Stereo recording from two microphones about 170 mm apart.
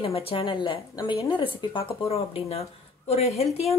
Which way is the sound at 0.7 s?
20° left (ahead or behind).